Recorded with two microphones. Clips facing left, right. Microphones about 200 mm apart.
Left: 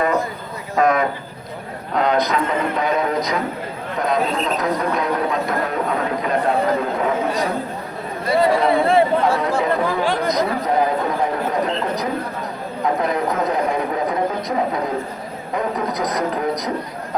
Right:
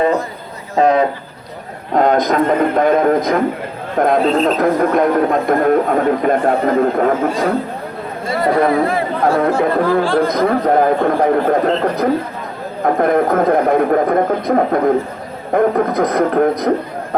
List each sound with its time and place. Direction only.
0.8 s a sound: 30° right (ahead or behind)
1.9 s a man's voice: 45° right (ahead or behind)
8.7 s speech: 30° left (ahead or behind)
9.2 s speech: 55° right (ahead or behind)